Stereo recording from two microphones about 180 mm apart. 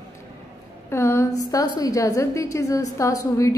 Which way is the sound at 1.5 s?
20° left (ahead or behind).